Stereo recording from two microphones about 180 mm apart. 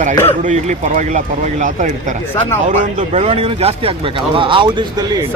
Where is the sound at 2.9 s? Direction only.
35° right (ahead or behind).